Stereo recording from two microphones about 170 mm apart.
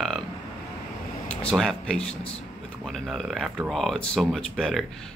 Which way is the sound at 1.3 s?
5° left (ahead or behind).